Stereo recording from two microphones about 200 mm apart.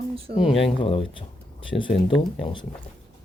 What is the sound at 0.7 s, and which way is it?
Speech, 25° left (ahead or behind).